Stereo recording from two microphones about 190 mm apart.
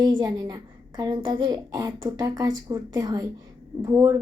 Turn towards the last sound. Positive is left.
turn(degrees=-15)  # may be behind; listen again after turning